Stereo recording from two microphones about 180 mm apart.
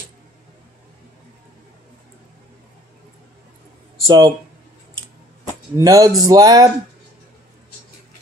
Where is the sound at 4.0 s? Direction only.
25° right (ahead or behind).